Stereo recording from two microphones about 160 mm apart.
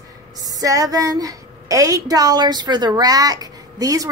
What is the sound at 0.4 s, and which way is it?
A woman's voice, 20° right (ahead or behind).